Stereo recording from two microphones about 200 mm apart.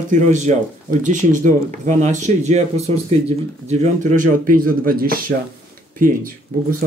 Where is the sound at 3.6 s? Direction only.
40° right (ahead or behind).